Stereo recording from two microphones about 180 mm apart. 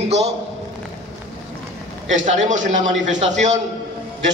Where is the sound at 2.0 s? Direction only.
40° right (ahead or behind).